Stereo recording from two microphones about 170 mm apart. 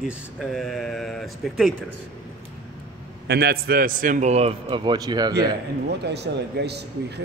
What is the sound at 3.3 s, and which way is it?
A man's voice, 70° right (ahead or behind).